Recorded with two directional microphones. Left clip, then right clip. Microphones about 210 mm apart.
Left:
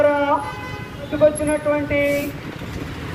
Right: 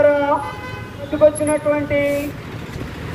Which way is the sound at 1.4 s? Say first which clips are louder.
Right 2 dB; 15° right (ahead or behind).